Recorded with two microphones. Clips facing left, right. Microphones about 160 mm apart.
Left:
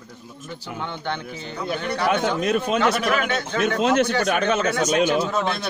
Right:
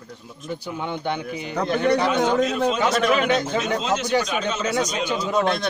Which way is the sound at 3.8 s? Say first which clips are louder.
Left 5 dB; 60° left (ahead or behind).